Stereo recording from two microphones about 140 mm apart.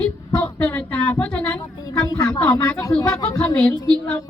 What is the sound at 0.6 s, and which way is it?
Speech, 10° left (ahead or behind).